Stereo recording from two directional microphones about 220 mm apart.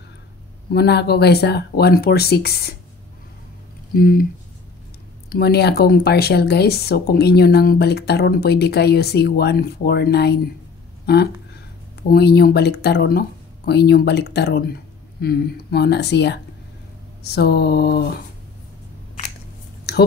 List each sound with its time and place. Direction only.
0.7 s speech: 45° left (ahead or behind)
3.9 s speech: 40° left (ahead or behind)
5.3 s speech: 45° left (ahead or behind)
19.9 s a sound: 45° left (ahead or behind)